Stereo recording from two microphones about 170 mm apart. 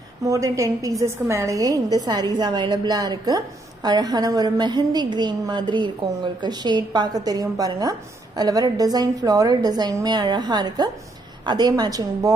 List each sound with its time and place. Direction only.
0.2 s a woman's voice: 20° right (ahead or behind)